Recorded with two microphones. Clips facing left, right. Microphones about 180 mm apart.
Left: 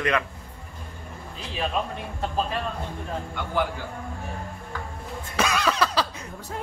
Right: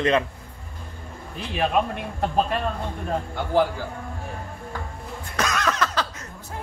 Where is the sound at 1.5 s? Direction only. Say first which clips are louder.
Right 5 dB; 60° right (ahead or behind).